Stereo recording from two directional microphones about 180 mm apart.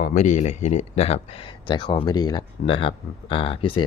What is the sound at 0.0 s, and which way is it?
Speech, 40° left (ahead or behind).